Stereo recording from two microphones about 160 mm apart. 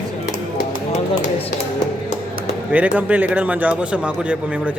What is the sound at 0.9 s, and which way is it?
Speech, 50° left (ahead or behind).